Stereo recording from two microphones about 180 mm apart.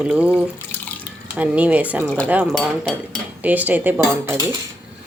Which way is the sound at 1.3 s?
5° right (ahead or behind).